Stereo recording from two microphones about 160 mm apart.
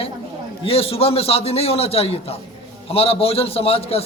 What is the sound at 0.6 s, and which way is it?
A man's voice, 35° left (ahead or behind).